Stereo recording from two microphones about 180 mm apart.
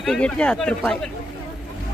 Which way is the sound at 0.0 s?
5° left (ahead or behind).